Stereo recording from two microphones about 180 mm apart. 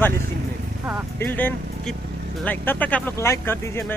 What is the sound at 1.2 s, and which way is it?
Speech, 10° left (ahead or behind).